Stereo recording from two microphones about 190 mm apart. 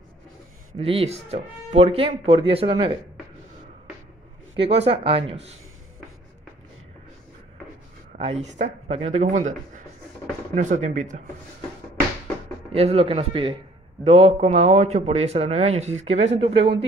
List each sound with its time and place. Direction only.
0.7 s speech: 30° right (ahead or behind)
4.6 s speech: 30° right (ahead or behind)
8.2 s speech: 35° right (ahead or behind)
12.7 s speech: 30° right (ahead or behind)